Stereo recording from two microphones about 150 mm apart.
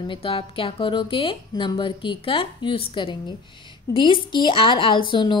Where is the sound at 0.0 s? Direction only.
35° left (ahead or behind).